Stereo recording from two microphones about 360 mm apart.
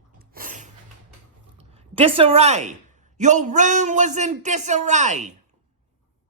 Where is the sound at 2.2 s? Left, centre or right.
Centre.